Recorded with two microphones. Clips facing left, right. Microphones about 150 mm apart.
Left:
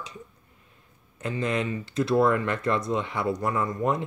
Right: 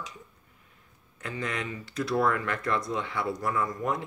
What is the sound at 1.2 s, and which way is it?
Speech, 20° left (ahead or behind).